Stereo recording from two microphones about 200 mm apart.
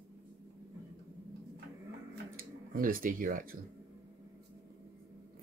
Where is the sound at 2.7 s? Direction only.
45° right (ahead or behind).